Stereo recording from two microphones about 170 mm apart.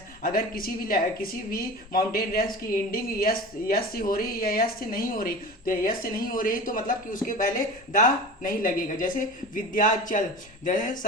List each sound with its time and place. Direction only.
0.2 s a woman's voice: 60° left (ahead or behind)